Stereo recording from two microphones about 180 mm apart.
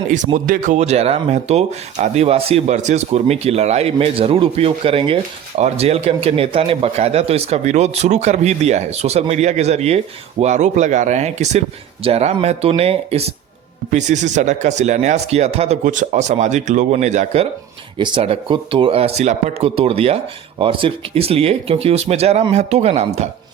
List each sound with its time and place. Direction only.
0.3 s speech: 45° right (ahead or behind)